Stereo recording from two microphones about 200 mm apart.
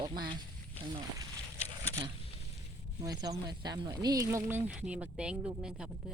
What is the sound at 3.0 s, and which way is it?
Speech, 20° right (ahead or behind).